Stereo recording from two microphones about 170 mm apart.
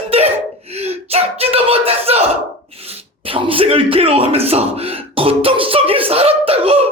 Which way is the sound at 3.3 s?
30° right (ahead or behind).